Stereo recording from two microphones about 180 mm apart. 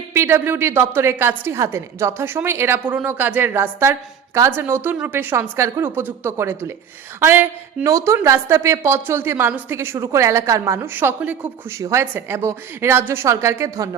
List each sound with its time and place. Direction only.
0.1 s a woman's voice: 15° right (ahead or behind)